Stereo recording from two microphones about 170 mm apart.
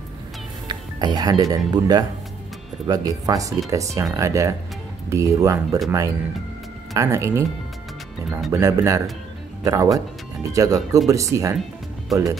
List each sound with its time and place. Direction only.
0.7 s music: 25° right (ahead or behind)
1.7 s speech: 25° right (ahead or behind)
8.5 s speech: 20° right (ahead or behind)